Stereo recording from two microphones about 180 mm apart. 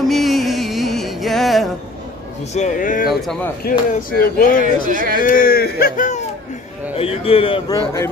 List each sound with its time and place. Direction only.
0.1 s music: centre (ahead or behind)
2.5 s speech: 45° left (ahead or behind)
3.1 s speech: centre (ahead or behind)
3.7 s speech: 60° left (ahead or behind)
4.8 s speech: 50° right (ahead or behind)
5.2 s speech: 50° left (ahead or behind)
7.0 s a man's voice: 30° left (ahead or behind)
7.7 s speech: 15° left (ahead or behind)